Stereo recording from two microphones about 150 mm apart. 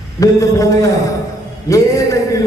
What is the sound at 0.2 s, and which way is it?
A man's voice, 20° left (ahead or behind).